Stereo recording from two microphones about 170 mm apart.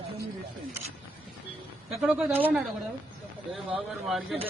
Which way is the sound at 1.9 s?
5° right (ahead or behind).